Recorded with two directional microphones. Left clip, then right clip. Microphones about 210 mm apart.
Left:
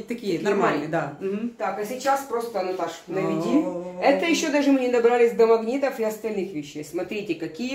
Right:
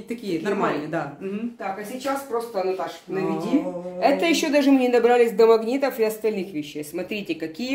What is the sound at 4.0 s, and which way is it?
Speech, 45° right (ahead or behind).